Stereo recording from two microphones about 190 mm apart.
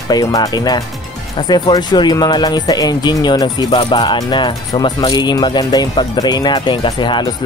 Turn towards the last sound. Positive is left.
turn(degrees=20)  # may be behind; listen again after turning